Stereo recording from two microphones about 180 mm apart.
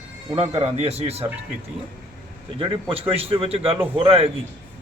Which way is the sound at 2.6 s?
30° right (ahead or behind).